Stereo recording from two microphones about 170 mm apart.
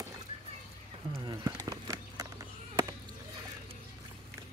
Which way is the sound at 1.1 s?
30° right (ahead or behind).